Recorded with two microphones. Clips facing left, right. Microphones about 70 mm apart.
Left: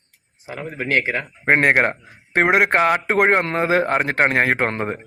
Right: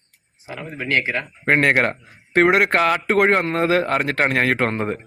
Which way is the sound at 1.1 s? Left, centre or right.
Left.